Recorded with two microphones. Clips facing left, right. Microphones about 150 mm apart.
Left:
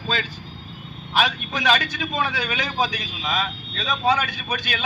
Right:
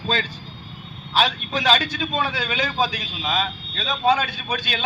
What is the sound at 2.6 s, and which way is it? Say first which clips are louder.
Speech: right 1 dB; 15° left (ahead or behind).